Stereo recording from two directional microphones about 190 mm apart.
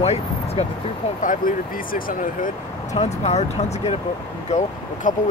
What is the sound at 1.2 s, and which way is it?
Speech, 45° left (ahead or behind).